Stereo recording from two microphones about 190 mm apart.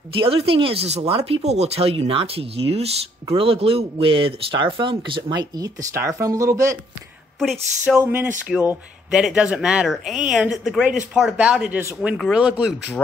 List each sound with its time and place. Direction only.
0.2 s speech: 30° right (ahead or behind)
7.9 s speech: 10° right (ahead or behind)